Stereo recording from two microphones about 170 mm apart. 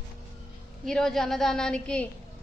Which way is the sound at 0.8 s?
5° left (ahead or behind).